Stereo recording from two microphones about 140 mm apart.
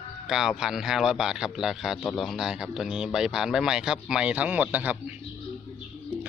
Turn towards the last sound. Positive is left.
turn(degrees=-10)  # may be behind; listen again after turning